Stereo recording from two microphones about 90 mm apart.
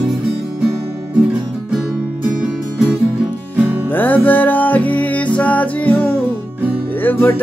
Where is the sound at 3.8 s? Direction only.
20° left (ahead or behind).